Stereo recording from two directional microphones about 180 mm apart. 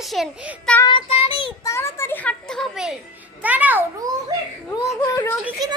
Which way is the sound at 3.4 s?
10° right (ahead or behind).